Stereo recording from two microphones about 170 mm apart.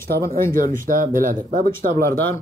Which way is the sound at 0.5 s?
55° right (ahead or behind).